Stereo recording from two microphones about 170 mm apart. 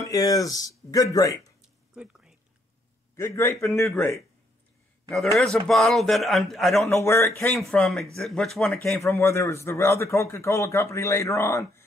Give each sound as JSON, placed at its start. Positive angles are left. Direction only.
{"t": 0.0, "sound": "speech", "side_deg": 20}
{"t": 1.6, "sound": "a sound", "side_deg": -5}
{"t": 3.2, "sound": "a man's voice", "side_deg": 15}
{"t": 5.1, "sound": "a man's voice", "side_deg": 0}
{"t": 6.9, "sound": "a man's voice", "side_deg": 15}
{"t": 7.5, "sound": "a man's voice", "side_deg": 0}
{"t": 8.8, "sound": "a man's voice", "side_deg": 15}